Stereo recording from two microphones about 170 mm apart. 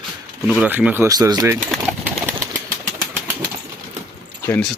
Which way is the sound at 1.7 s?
5° right (ahead or behind).